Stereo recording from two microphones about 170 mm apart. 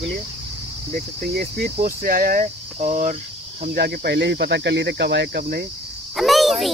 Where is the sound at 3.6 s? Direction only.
65° right (ahead or behind); by 5.4 s 85° right.